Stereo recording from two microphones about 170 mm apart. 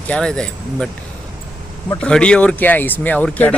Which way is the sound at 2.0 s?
5° left (ahead or behind).